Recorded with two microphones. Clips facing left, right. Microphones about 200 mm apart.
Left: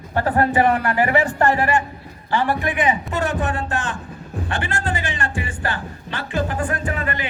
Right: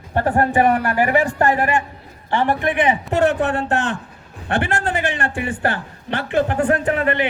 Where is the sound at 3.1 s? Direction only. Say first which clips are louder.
Right 6 dB; 65° right (ahead or behind).